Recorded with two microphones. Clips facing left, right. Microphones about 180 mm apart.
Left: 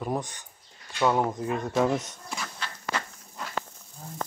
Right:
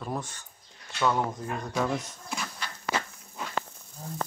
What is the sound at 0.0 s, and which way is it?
Speech, 15° left (ahead or behind).